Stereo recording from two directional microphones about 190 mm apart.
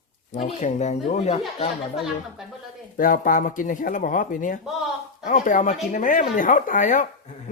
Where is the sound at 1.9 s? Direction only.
Centre (ahead or behind).